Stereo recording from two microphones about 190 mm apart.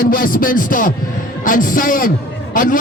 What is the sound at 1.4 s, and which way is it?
A man's voice, 45° left (ahead or behind).